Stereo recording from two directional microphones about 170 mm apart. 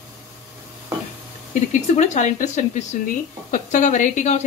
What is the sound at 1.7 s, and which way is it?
Speech, 45° left (ahead or behind).